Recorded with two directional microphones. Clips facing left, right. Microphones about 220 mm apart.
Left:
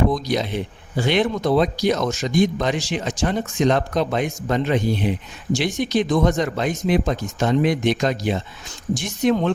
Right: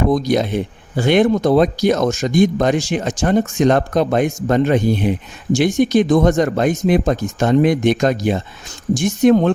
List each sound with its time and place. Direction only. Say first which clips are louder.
0.1 s speech: right 6 dB; 50° right (ahead or behind)